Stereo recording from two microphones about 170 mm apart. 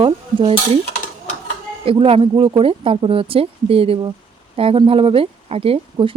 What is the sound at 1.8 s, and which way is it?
Speech, 35° right (ahead or behind).